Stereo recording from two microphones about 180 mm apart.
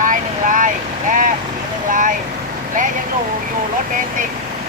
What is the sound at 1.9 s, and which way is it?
Vehicle, 45° right (ahead or behind).